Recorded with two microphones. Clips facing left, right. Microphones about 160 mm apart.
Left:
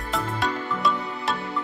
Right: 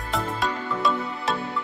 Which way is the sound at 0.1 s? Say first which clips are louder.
Even; centre (ahead or behind).